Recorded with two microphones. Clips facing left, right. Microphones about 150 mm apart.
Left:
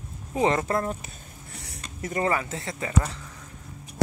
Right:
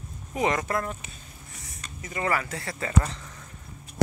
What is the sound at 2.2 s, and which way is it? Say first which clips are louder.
Speech: even; 20° left (ahead or behind).